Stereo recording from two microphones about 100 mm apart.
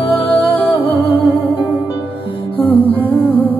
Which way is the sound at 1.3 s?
20° right (ahead or behind).